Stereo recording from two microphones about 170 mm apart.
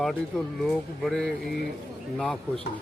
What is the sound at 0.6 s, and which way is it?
A man's voice, centre (ahead or behind).